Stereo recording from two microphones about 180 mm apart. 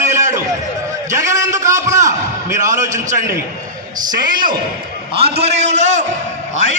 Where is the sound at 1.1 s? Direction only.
15° right (ahead or behind).